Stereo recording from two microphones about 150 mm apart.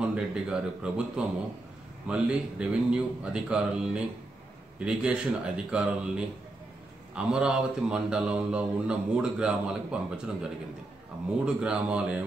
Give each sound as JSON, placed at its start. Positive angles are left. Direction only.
{"t": 0.0, "sound": "speech", "side_deg": -5}